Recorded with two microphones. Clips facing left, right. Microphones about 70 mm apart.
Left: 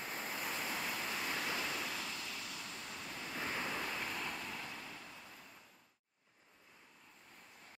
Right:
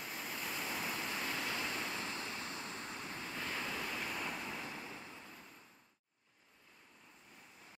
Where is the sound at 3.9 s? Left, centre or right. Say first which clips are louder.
Even; centre.